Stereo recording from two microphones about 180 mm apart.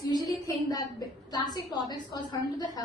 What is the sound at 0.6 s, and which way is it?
A woman's voice, 20° left (ahead or behind).